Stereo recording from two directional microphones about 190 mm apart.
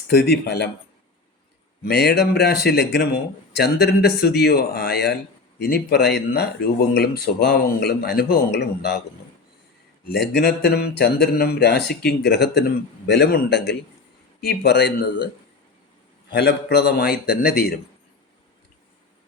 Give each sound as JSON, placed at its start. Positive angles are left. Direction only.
{"t": 0.1, "sound": "speech", "side_deg": 55}
{"t": 1.8, "sound": "speech", "side_deg": 60}
{"t": 10.1, "sound": "speech", "side_deg": 60}
{"t": 16.3, "sound": "speech", "side_deg": 55}